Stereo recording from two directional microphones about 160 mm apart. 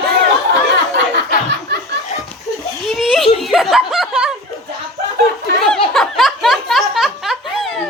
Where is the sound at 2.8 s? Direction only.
Centre (ahead or behind).